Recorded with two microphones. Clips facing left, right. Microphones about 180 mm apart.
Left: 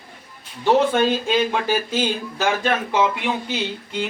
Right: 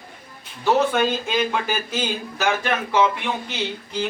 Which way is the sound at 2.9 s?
20° left (ahead or behind).